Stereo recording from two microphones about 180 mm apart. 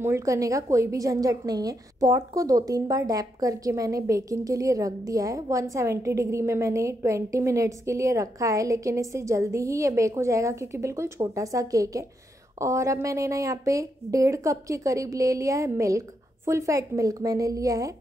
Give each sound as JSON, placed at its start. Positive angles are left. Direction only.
{"t": 0.0, "sound": "a woman's voice", "side_deg": -15}